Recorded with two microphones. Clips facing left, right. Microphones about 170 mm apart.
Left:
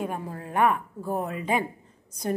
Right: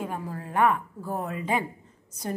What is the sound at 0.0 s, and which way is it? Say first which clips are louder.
A woman's voice: left 1 dB; 20° left (ahead or behind).